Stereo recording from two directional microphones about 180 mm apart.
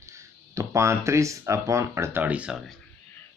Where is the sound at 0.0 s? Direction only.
15° right (ahead or behind).